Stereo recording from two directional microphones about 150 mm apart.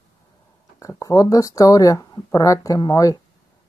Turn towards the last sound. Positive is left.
turn(degrees=25)  # may be behind; listen again after turning